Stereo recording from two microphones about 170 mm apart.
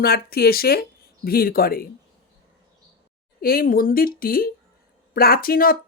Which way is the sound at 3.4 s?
60° left (ahead or behind).